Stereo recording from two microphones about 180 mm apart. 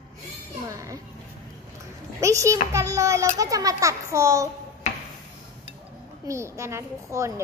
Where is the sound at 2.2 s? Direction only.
15° right (ahead or behind).